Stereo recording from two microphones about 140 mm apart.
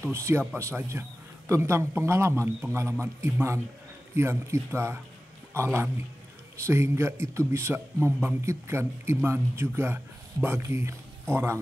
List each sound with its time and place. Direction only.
0.0 s a man's voice: 20° right (ahead or behind)